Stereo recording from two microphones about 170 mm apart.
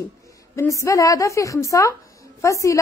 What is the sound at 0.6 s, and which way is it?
A woman's voice, 15° left (ahead or behind).